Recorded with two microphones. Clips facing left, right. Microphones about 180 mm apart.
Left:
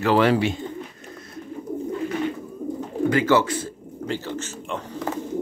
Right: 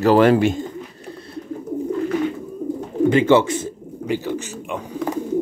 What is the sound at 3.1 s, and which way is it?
Speech, 25° right (ahead or behind).